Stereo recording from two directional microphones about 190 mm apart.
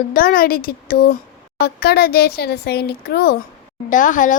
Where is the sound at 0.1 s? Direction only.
50° left (ahead or behind).